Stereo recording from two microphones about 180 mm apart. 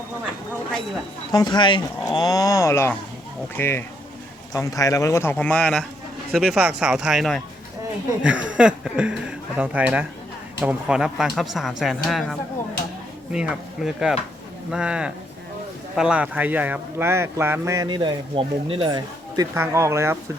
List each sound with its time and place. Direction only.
1.3 s speech: 25° left (ahead or behind); by 19.5 s 25° right (ahead or behind)
19.5 s speech: 15° right (ahead or behind)